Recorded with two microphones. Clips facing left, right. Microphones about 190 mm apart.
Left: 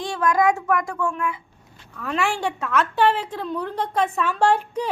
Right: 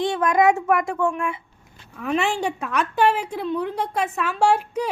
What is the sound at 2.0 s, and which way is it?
A woman's voice, 15° right (ahead or behind).